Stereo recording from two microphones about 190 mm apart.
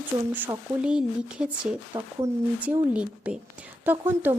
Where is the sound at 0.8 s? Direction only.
5° right (ahead or behind).